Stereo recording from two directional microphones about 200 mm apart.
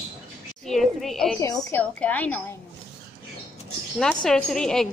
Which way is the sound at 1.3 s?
15° left (ahead or behind).